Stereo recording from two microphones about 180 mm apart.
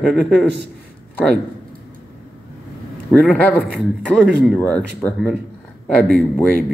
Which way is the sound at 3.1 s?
10° left (ahead or behind).